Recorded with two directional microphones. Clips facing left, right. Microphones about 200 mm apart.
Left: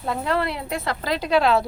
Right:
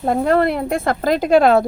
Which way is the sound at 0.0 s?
50° right (ahead or behind).